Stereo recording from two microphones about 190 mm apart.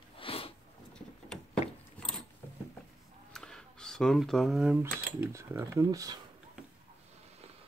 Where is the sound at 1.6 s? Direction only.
35° left (ahead or behind).